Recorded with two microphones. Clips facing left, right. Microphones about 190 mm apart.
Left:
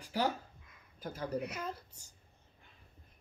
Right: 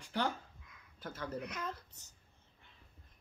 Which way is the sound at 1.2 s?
10° left (ahead or behind).